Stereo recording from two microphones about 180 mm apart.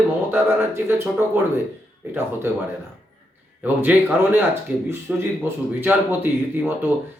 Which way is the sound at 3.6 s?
10° right (ahead or behind).